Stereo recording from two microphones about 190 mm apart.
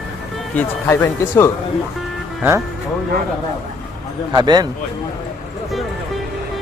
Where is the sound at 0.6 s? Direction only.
10° left (ahead or behind).